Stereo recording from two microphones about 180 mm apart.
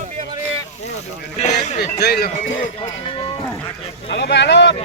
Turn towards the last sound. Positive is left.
turn(degrees=75)  # may be behind; listen again after turning